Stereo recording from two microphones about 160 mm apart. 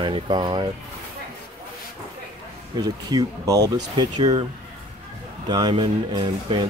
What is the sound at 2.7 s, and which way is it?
Speech, 25° right (ahead or behind).